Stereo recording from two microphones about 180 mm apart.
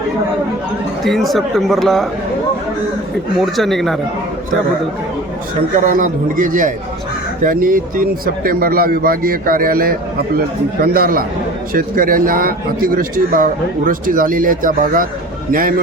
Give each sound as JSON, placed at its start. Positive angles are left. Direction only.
{"t": 1.0, "sound": "speech", "side_deg": 0}
{"t": 3.4, "sound": "speech", "side_deg": 0}
{"t": 5.8, "sound": "a man's voice", "side_deg": -50}